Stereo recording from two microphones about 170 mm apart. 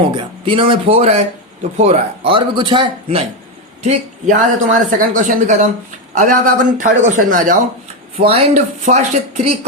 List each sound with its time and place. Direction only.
0.1 s speech: 30° right (ahead or behind)
2.3 s a man's voice: 30° right (ahead or behind)
3.8 s speech: 45° right (ahead or behind)
8.2 s speech: 35° right (ahead or behind)